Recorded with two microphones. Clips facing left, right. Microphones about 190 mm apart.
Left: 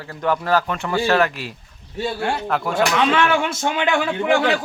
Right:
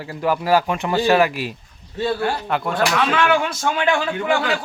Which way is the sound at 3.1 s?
25° left (ahead or behind).